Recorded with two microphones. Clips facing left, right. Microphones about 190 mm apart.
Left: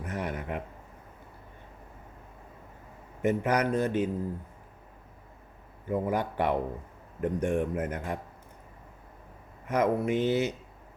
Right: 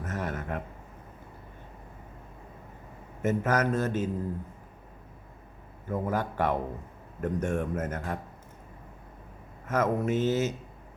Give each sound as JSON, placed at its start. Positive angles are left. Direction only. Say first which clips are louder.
{"t": 0.0, "sound": "a sound", "louder": "even", "side_deg": 15}
{"t": 3.2, "sound": "a man's voice", "louder": "even", "side_deg": 15}
{"t": 5.9, "sound": "a man's voice", "louder": "left 1 dB", "side_deg": 15}
{"t": 9.6, "sound": "a man's voice", "louder": "left 1 dB", "side_deg": 15}